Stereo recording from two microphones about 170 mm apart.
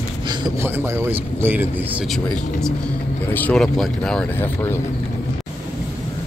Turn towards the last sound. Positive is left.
turn(degrees=15)  # may be behind; listen again after turning